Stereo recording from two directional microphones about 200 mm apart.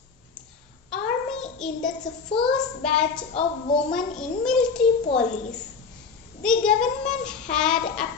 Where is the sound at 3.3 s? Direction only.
30° left (ahead or behind).